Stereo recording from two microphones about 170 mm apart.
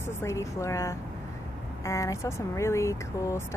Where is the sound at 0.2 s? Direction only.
15° left (ahead or behind).